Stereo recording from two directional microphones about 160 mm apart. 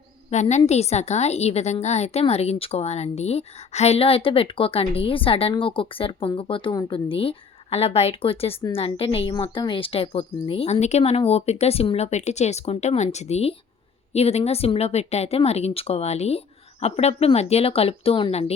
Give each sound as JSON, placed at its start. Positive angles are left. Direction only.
{"t": 0.3, "sound": "a woman's voice", "side_deg": 45}